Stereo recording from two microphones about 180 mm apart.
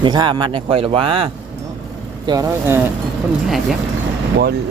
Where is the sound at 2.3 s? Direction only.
20° right (ahead or behind).